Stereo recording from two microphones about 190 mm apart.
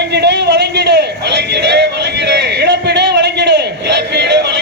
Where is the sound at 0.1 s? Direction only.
65° right (ahead or behind).